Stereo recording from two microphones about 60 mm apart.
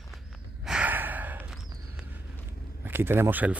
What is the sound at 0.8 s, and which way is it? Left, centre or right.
Gasp, right.